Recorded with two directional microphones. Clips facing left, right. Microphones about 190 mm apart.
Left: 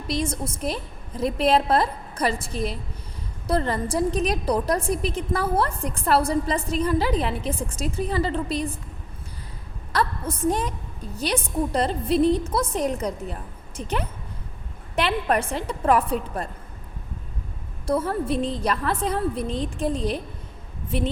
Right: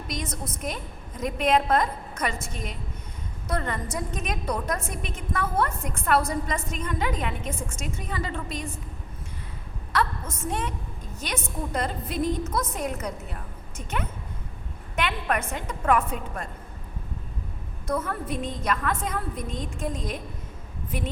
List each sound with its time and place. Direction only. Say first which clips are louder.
0.1 s a woman's voice: left 8 dB; 30° left (ahead or behind)
9.9 s a sound: left 2 dB; 35° left (ahead or behind)
11.2 s a woman's voice: left 7 dB; 30° left (ahead or behind)
17.8 s a woman's voice: left 5 dB; 30° left (ahead or behind)